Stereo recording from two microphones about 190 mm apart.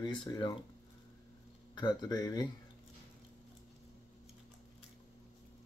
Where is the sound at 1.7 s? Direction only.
20° left (ahead or behind).